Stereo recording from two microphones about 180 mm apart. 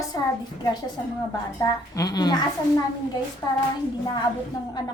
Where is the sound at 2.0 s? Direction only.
20° left (ahead or behind).